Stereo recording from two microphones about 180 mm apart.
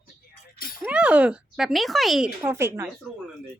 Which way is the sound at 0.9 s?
5° right (ahead or behind).